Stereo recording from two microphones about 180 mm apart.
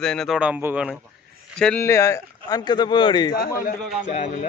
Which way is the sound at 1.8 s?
15° left (ahead or behind).